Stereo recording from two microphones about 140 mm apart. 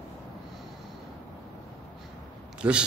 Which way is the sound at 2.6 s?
10° right (ahead or behind).